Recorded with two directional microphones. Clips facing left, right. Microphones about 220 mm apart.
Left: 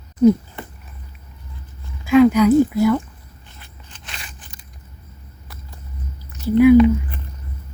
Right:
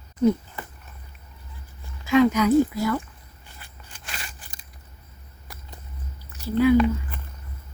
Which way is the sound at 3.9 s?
5° right (ahead or behind).